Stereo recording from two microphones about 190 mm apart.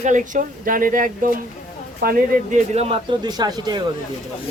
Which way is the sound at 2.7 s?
35° right (ahead or behind).